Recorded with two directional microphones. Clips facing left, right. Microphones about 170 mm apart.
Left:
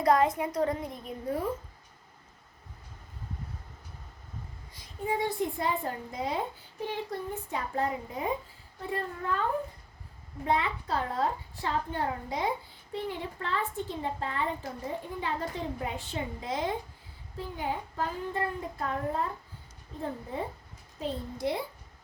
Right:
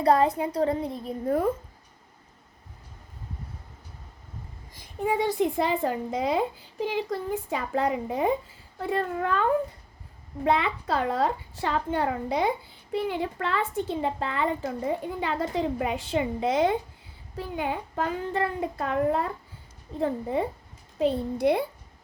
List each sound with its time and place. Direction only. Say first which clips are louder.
0.0 s a woman's voice: right 3 dB; 30° right (ahead or behind)
5.0 s a woman's voice: right 5 dB; 90° right
21.0 s a child's voice: right 9 dB; 65° right (ahead or behind)